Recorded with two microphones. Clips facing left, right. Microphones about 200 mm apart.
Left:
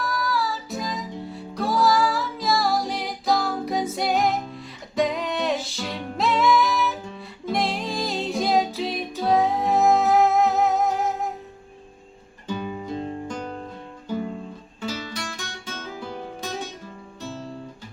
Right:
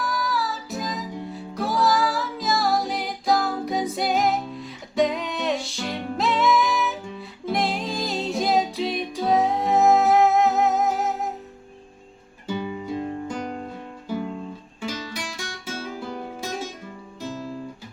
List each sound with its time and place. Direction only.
0.0 s music: centre (ahead or behind)
12.5 s music: 10° right (ahead or behind)
14.8 s music: 10° right (ahead or behind)